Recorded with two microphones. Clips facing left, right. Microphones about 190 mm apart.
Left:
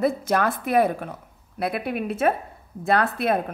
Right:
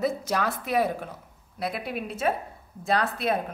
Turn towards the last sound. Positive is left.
turn(degrees=55)  # may be behind; listen again after turning